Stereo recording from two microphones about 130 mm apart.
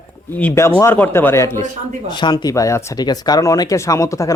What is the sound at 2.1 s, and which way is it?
Speech, 35° left (ahead or behind).